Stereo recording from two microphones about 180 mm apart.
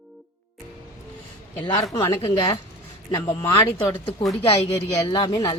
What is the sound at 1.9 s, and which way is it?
Speech, 25° left (ahead or behind).